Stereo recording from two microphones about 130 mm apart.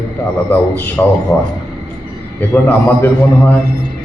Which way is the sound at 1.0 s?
15° left (ahead or behind).